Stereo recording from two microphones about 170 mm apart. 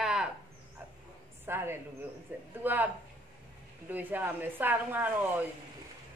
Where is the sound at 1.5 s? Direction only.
15° right (ahead or behind).